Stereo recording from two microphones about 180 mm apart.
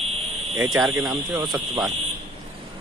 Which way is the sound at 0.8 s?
20° right (ahead or behind).